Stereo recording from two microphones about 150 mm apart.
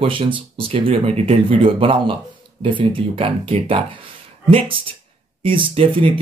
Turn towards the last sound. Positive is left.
turn(degrees=-35)  # may be behind; listen again after turning